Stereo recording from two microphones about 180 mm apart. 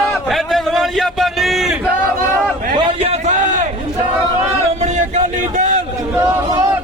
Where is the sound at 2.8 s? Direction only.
35° right (ahead or behind).